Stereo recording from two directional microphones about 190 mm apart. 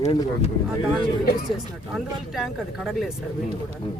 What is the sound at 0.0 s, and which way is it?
Speech, 30° left (ahead or behind).